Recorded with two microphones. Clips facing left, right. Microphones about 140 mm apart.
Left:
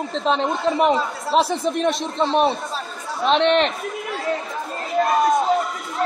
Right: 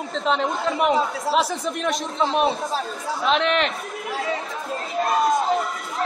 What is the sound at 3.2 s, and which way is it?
Speech, 35° left (ahead or behind).